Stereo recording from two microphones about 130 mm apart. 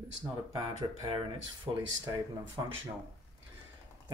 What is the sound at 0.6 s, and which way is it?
Speech, 40° right (ahead or behind).